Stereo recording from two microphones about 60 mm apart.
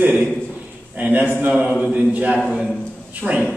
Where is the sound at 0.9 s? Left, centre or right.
Right.